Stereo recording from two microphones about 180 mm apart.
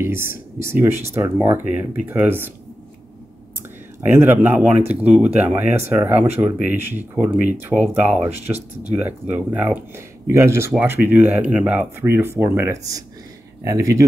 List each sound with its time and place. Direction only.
0.0 s speech: 15° right (ahead or behind)
4.0 s speech: 10° right (ahead or behind)
8.3 s speech: 60° left (ahead or behind)
8.9 s speech: 10° right (ahead or behind)